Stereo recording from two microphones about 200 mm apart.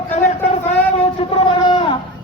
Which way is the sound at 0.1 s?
35° left (ahead or behind).